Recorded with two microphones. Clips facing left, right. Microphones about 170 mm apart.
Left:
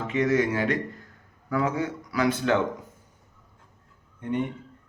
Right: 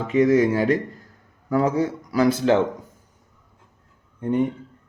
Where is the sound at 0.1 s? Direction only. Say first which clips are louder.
Right 6 dB; 35° right (ahead or behind).